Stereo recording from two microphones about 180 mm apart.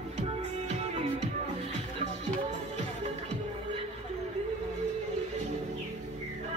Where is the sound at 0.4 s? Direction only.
35° right (ahead or behind).